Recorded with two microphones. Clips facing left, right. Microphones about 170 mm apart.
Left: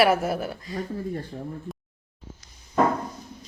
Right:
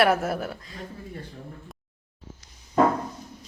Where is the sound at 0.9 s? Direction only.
45° left (ahead or behind).